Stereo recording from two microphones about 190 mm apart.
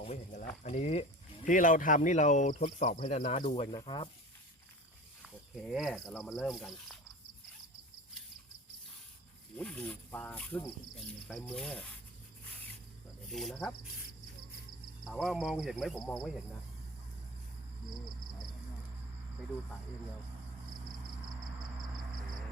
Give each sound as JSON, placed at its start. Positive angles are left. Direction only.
{"t": 0.0, "sound": "speech", "side_deg": 35}
{"t": 3.4, "sound": "speech", "side_deg": 25}
{"t": 5.2, "sound": "speech", "side_deg": 0}
{"t": 9.6, "sound": "speech", "side_deg": 5}
{"t": 13.3, "sound": "speech", "side_deg": 0}
{"t": 15.0, "sound": "speech", "side_deg": 0}